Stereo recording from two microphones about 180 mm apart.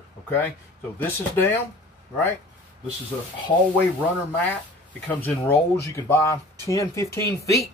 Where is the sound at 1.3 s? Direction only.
15° left (ahead or behind).